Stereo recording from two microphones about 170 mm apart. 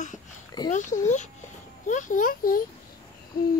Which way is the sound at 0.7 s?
45° left (ahead or behind).